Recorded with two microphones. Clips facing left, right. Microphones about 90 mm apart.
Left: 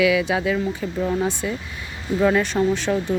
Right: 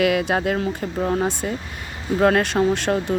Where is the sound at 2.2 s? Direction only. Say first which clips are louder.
Right 1 dB; 60° right (ahead or behind).